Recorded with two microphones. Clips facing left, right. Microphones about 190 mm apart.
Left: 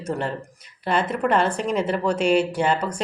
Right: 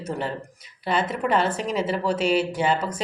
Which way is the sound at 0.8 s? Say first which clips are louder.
Left 1 dB; 50° left (ahead or behind).